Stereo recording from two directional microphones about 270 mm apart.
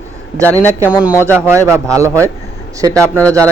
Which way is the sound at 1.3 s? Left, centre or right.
Centre.